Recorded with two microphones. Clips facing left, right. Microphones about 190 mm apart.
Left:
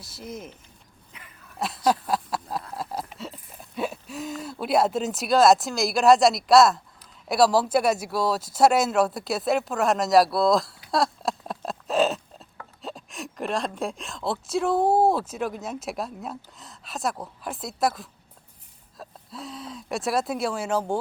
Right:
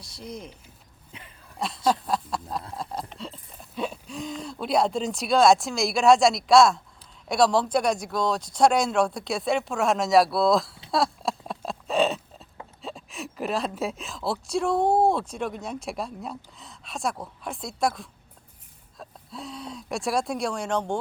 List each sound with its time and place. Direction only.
0.0 s a woman's voice: 5° left (ahead or behind)
1.1 s dog: 25° right (ahead or behind)
1.5 s a woman's voice: 5° left (ahead or behind)
10.9 s a sound: centre (ahead or behind)
12.8 s a woman's voice: centre (ahead or behind)